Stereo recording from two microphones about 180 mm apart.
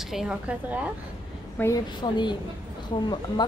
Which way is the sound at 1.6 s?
20° left (ahead or behind).